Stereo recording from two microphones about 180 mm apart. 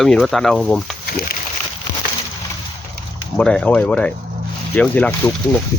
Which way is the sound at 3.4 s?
5° left (ahead or behind).